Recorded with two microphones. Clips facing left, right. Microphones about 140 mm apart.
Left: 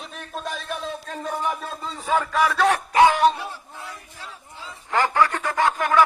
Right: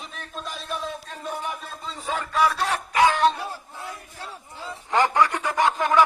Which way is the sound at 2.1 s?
90° left.